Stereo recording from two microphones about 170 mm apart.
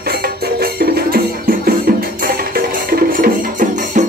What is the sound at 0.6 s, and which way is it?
Music, 60° right (ahead or behind).